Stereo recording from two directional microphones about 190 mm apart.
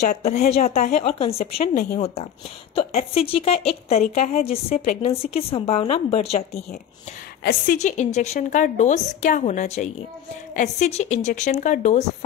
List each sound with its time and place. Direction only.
0.0 s a woman's voice: 35° left (ahead or behind)
7.4 s a woman's voice: 45° left (ahead or behind)